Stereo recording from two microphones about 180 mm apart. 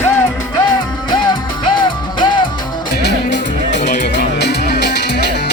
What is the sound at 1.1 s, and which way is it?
Music, 25° left (ahead or behind).